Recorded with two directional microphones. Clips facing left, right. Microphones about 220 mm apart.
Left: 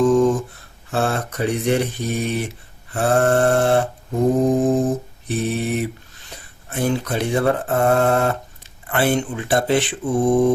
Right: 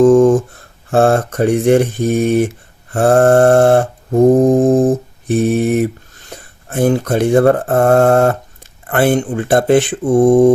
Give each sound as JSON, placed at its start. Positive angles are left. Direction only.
{"t": 0.0, "sound": "a sound", "side_deg": -50}
{"t": 0.9, "sound": "mantra", "side_deg": -50}
{"t": 6.3, "sound": "speech", "side_deg": -50}
{"t": 8.9, "sound": "mantra", "side_deg": -50}